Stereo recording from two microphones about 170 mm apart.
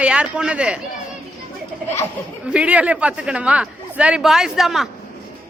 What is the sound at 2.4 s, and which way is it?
Speech, 5° right (ahead or behind).